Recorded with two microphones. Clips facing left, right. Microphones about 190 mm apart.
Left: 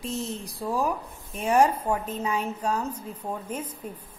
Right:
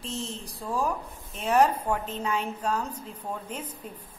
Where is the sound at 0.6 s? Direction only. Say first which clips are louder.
Left 2 dB; 10° left (ahead or behind).